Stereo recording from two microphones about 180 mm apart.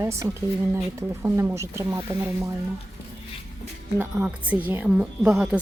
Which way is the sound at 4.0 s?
10° right (ahead or behind).